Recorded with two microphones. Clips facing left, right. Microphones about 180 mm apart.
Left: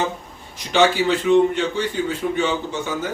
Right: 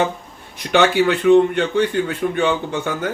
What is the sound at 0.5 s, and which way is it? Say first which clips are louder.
Speech: right 2 dB; 60° right (ahead or behind).